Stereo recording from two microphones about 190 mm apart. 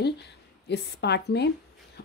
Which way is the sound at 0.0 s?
60° left (ahead or behind).